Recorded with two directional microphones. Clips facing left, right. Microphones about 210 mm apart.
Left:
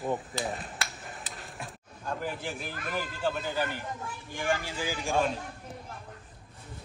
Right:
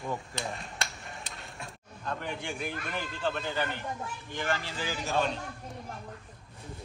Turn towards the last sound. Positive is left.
turn(degrees=10)  # may be behind; listen again after turning